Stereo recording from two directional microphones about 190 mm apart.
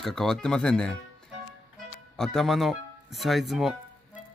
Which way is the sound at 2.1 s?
Centre (ahead or behind).